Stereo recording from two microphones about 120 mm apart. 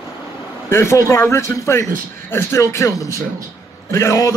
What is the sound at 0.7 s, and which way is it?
A man's voice, 20° left (ahead or behind).